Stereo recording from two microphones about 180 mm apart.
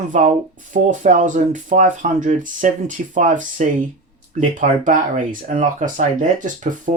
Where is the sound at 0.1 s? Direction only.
45° right (ahead or behind).